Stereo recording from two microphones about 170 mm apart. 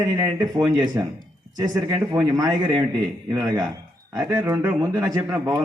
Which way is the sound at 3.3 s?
20° right (ahead or behind).